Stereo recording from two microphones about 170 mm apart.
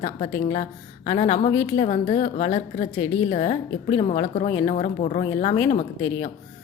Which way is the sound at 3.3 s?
40° left (ahead or behind).